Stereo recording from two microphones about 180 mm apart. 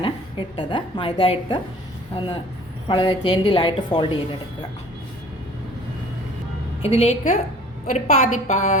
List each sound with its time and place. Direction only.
0.0 s a woman's voice: 25° left (ahead or behind)
6.8 s a woman's voice: 35° left (ahead or behind)